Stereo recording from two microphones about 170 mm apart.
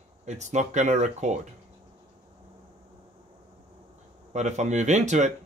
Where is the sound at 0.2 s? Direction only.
45° right (ahead or behind).